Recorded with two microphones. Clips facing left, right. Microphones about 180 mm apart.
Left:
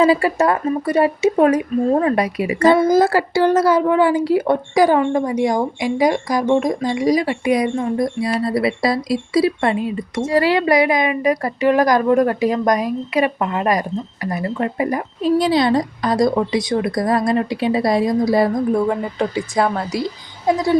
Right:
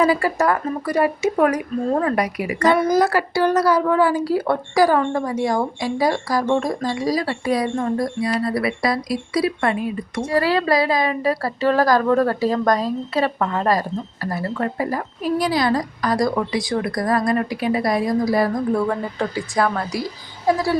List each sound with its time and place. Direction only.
0.0 s speech: 25° left (ahead or behind)